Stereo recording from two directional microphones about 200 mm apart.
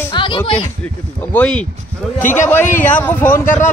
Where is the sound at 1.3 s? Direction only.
5° left (ahead or behind).